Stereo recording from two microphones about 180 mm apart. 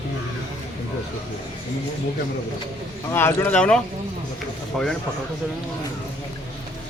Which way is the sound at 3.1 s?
15° left (ahead or behind).